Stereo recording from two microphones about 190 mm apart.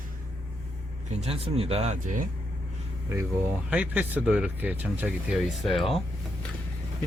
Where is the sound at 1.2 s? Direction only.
30° right (ahead or behind).